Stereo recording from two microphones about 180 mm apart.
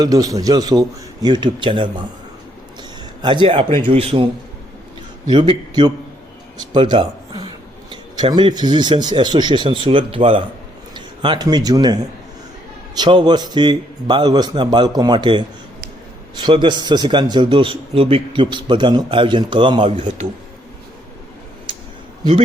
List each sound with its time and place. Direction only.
0.0 s a man's voice: 20° right (ahead or behind)
3.2 s a man's voice: 25° right (ahead or behind)
5.3 s a man's voice: 25° right (ahead or behind)